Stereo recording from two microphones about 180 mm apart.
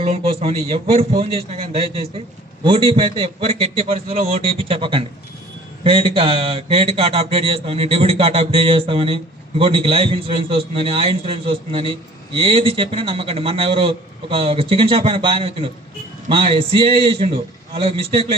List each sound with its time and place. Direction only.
0.0 s a man's voice: 35° right (ahead or behind)